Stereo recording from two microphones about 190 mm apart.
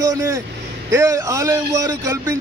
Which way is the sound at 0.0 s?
15° right (ahead or behind).